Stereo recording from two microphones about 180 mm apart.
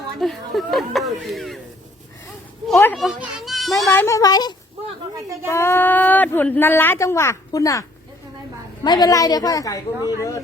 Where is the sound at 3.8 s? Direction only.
15° left (ahead or behind).